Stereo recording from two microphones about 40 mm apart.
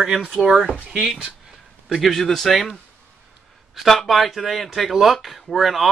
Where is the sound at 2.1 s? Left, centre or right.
Centre.